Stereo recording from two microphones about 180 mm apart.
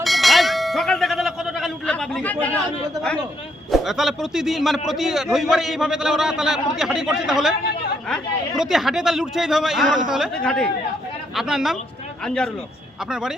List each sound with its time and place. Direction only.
0.0 s a sound: centre (ahead or behind)
3.7 s a man's voice: centre (ahead or behind)
7.6 s chatter: 60° left (ahead or behind)
8.1 s a man's voice: centre (ahead or behind)